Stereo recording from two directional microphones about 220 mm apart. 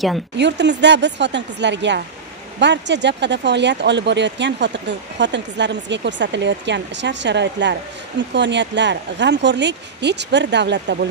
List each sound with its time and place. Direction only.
0.4 s speech: 50° right (ahead or behind)